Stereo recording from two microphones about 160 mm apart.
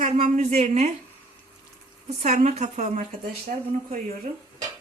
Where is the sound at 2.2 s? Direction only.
50° right (ahead or behind).